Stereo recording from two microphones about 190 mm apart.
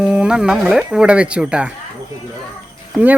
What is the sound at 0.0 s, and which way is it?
Speech, 5° right (ahead or behind).